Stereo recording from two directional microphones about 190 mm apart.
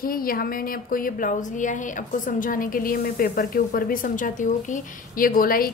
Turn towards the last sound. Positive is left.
turn(degrees=50)  # may be behind; listen again after turning